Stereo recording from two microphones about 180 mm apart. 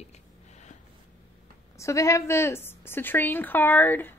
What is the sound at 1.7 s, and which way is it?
A woman's voice, 15° left (ahead or behind).